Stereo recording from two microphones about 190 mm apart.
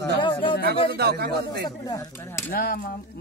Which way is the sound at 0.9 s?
55° right (ahead or behind).